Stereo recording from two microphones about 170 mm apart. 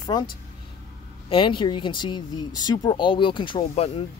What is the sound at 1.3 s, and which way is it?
Speech, 30° left (ahead or behind).